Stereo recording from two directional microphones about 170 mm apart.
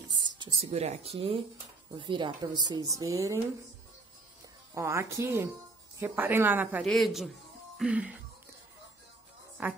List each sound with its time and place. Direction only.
0.6 s speech: 35° right (ahead or behind); by 3.3 s 20° right (ahead or behind)
4.7 s speech: 15° right (ahead or behind)
6.8 s speech: centre (ahead or behind)
7.7 s music: 5° right (ahead or behind)
9.6 s speech: 10° right (ahead or behind)